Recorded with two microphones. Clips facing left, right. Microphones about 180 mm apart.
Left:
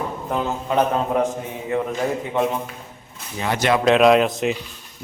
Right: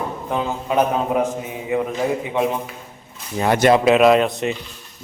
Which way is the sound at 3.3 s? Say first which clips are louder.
Right 6 dB; 50° right (ahead or behind).